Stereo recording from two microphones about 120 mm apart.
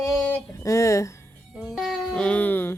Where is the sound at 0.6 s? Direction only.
25° left (ahead or behind).